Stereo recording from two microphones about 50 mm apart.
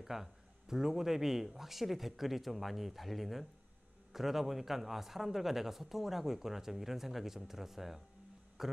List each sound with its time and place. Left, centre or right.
0.0 s a man's voice: centre